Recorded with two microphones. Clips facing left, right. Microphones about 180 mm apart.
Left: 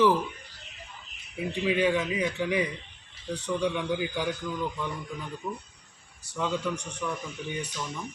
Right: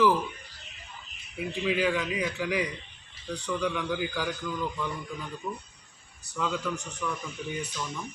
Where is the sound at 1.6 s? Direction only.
25° left (ahead or behind).